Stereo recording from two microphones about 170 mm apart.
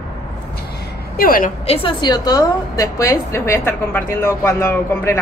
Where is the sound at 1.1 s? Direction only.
55° left (ahead or behind).